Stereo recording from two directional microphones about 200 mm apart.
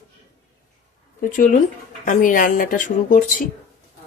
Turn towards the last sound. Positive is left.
turn(degrees=40)  # may be behind; listen again after turning